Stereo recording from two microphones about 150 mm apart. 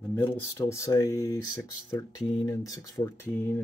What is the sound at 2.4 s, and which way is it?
Speech, 20° left (ahead or behind).